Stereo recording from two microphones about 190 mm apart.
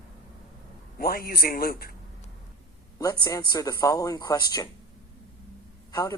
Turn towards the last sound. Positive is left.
turn(degrees=20)  # may be behind; listen again after turning